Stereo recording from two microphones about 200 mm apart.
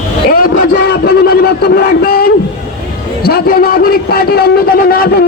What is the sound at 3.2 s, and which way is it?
A man's voice, 50° left (ahead or behind).